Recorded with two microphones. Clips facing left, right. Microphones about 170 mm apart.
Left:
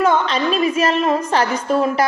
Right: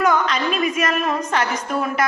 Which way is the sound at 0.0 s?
30° left (ahead or behind).